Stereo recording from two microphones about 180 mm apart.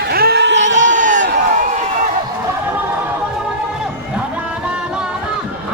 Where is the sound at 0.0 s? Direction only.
60° right (ahead or behind); by 0.7 s 80° right.